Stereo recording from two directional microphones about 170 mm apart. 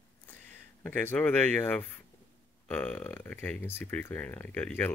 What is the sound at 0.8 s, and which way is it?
Speech, 10° left (ahead or behind).